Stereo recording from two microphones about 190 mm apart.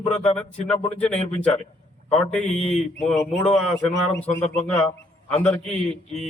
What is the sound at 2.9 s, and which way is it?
Speech, centre (ahead or behind).